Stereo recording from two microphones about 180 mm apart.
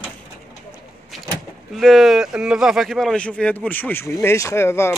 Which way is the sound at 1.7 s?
Centre (ahead or behind).